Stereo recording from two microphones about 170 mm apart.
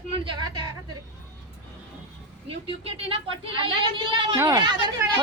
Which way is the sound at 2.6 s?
35° right (ahead or behind).